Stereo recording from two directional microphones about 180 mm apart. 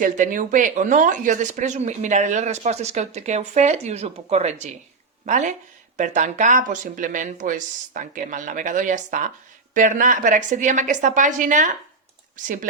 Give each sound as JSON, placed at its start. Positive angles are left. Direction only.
{"t": 0.0, "sound": "speech", "side_deg": -45}